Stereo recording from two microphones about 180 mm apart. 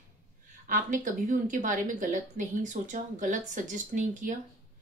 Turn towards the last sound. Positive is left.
turn(degrees=-45)  # may be behind; listen again after turning